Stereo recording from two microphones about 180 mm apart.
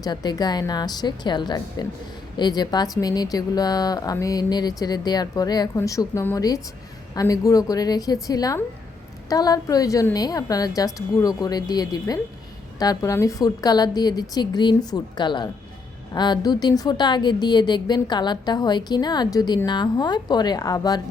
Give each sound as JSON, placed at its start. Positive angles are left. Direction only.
{"t": 0.0, "sound": "a woman's voice", "side_deg": 25}